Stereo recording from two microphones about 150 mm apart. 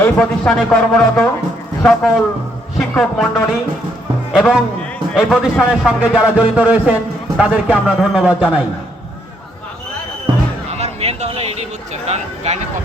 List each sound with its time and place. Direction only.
0.0 s speech: 10° left (ahead or behind)
2.7 s music: centre (ahead or behind)
4.3 s a man's voice: centre (ahead or behind)
10.7 s a sound: 45° right (ahead or behind)
12.0 s speech: 45° right (ahead or behind)